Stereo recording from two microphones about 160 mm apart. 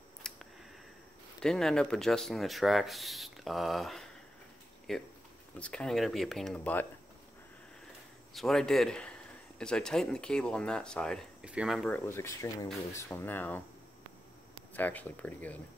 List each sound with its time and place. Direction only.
0.2 s a sound: 5° left (ahead or behind)
1.4 s speech: 5° left (ahead or behind)
8.3 s speech: centre (ahead or behind)
11.4 s speech: 5° right (ahead or behind)
11.9 s speech: 15° left (ahead or behind)
14.7 s speech: 10° left (ahead or behind)